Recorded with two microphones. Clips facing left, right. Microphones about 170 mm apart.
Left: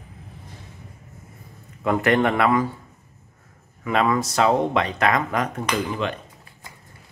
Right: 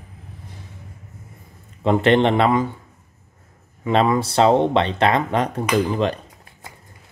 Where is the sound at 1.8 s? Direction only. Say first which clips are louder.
Right 4 dB; 25° right (ahead or behind).